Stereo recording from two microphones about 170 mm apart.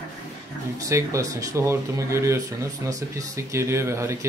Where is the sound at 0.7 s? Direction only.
15° right (ahead or behind).